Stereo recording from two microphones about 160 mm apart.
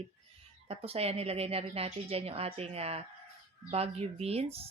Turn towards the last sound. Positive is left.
turn(degrees=-40)  # may be behind; listen again after turning